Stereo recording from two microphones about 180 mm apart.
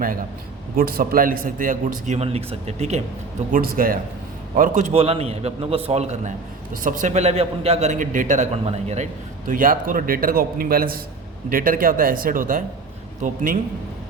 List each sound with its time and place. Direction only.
0.8 s a man's voice: 55° right (ahead or behind); by 3.0 s 40° right (ahead or behind)
3.5 s a man's voice: 50° right (ahead or behind)
9.5 s a man's voice: 50° right (ahead or behind)